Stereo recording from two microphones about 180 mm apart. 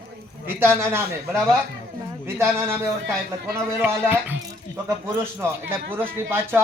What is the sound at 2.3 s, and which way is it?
Speech, 15° right (ahead or behind).